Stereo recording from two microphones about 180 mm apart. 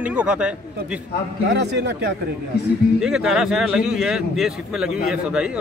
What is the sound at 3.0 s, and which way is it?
A man's voice, 5° right (ahead or behind).